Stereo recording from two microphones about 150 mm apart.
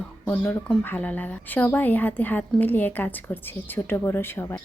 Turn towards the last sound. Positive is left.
turn(degrees=15)  # may be behind; listen again after turning